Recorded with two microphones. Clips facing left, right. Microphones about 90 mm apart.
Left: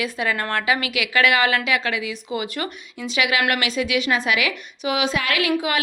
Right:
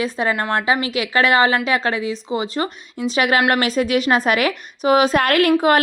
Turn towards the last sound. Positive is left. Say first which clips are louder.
# right 7 dB
turn(degrees=-45)  # may be behind; listen again after turning